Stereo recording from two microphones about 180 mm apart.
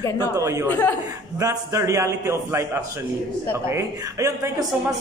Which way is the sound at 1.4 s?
20° right (ahead or behind).